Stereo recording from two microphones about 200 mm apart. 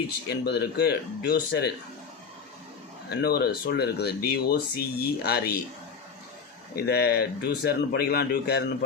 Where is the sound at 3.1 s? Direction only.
55° left (ahead or behind).